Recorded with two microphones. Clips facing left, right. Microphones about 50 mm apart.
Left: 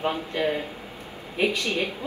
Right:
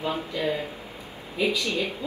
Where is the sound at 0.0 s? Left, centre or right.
Left.